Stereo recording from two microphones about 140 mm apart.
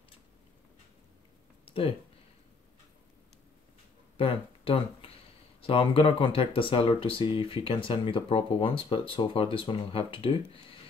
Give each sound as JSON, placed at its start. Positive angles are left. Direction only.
{"t": 1.7, "sound": "speech", "side_deg": 40}
{"t": 4.2, "sound": "speech", "side_deg": 40}